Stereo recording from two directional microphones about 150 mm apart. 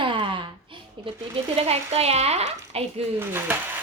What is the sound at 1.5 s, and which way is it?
A woman's voice, 40° right (ahead or behind).